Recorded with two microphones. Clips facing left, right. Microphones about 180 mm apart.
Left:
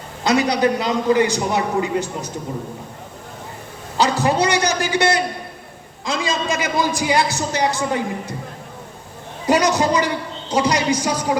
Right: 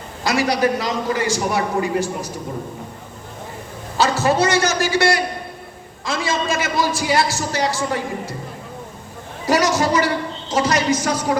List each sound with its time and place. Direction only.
0.3 s a man's voice: 20° left (ahead or behind)
3.9 s a man's voice: 15° left (ahead or behind)
9.5 s a man's voice: 20° left (ahead or behind)